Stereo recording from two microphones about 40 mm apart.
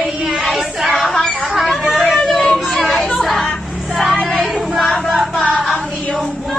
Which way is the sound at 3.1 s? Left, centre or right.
Centre.